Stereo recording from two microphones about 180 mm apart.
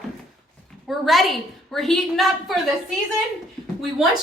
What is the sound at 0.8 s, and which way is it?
A woman's voice, centre (ahead or behind).